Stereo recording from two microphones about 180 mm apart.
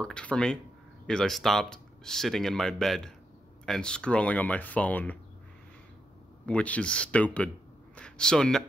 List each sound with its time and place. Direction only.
0.0 s speech: 5° left (ahead or behind)
6.4 s speech: 5° left (ahead or behind)